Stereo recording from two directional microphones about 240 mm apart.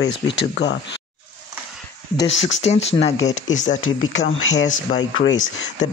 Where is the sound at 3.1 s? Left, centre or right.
Left.